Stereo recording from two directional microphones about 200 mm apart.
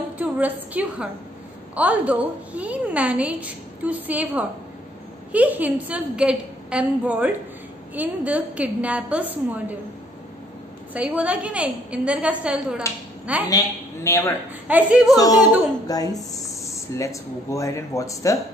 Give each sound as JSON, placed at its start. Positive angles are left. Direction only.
{"t": 0.2, "sound": "a woman's voice", "side_deg": -10}
{"t": 10.9, "sound": "a woman's voice", "side_deg": -5}
{"t": 14.0, "sound": "speech", "side_deg": 15}
{"t": 14.7, "sound": "a woman's voice", "side_deg": -5}
{"t": 15.1, "sound": "a woman's voice", "side_deg": 20}